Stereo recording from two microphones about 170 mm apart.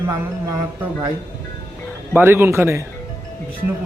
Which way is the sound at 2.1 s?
15° right (ahead or behind).